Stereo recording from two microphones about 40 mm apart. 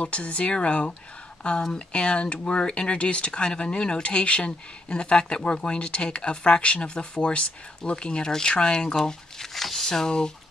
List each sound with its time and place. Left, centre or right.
0.0 s speech: left
9.4 s speech: centre